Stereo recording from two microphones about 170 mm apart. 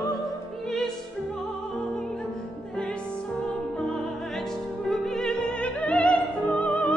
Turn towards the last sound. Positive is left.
turn(degrees=5)  # may be behind; listen again after turning